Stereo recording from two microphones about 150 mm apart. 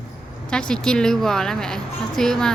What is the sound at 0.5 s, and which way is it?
A woman's voice, 5° left (ahead or behind).